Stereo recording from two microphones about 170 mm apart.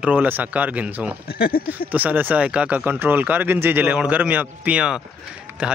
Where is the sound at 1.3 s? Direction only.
60° left (ahead or behind).